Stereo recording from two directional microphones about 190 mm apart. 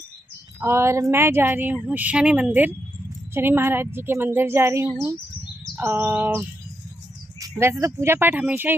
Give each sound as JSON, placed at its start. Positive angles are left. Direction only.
{"t": 0.6, "sound": "a woman's voice", "side_deg": -15}
{"t": 7.3, "sound": "cricket", "side_deg": -15}
{"t": 7.8, "sound": "a woman's voice", "side_deg": -15}